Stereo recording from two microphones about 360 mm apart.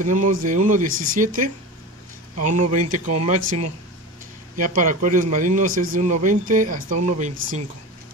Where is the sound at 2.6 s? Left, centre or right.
Right.